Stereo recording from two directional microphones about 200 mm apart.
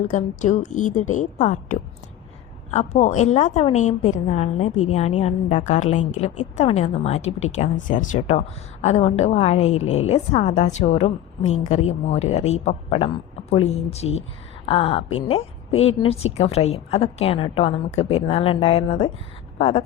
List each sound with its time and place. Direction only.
0.1 s a woman's voice: 40° left (ahead or behind)
9.8 s a woman's voice: 90° left
10.1 s a woman's voice: 30° left (ahead or behind)